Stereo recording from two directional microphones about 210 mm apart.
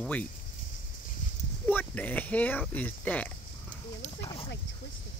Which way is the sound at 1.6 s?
10° left (ahead or behind).